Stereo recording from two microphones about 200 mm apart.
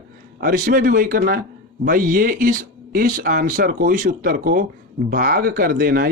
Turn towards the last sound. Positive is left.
turn(degrees=-45)  # may be behind; listen again after turning